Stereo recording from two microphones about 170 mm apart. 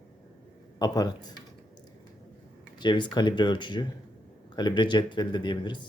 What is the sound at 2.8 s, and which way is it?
Speech, 25° left (ahead or behind).